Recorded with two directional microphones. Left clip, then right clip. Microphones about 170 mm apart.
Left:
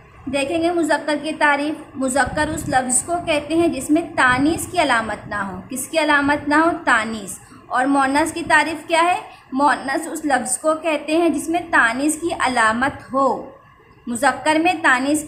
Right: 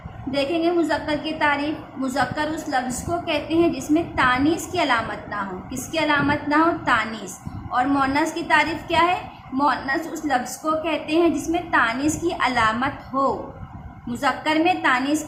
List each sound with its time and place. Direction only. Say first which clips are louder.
0.3 s a woman's voice: left 2 dB; 30° left (ahead or behind)